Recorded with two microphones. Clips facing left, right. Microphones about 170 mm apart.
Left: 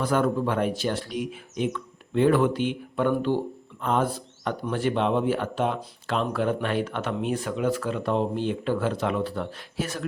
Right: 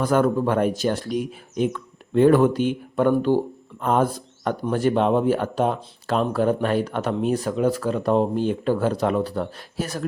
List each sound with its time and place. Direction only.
0.0 s speech: 45° right (ahead or behind)